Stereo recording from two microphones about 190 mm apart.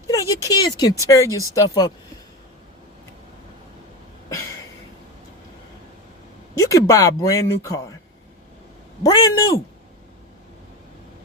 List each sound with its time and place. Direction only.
0.1 s speech: 20° left (ahead or behind)
6.6 s speech: 15° left (ahead or behind)
9.0 s a man's voice: 20° left (ahead or behind)